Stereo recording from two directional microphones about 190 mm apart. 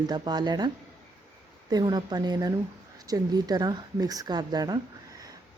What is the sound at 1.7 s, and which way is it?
Speech, 20° right (ahead or behind).